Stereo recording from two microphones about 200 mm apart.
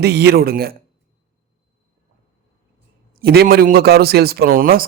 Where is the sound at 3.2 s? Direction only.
50° right (ahead or behind).